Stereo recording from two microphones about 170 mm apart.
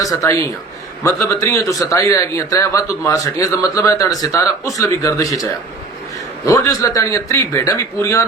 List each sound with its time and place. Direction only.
0.0 s a man's voice: 20° left (ahead or behind)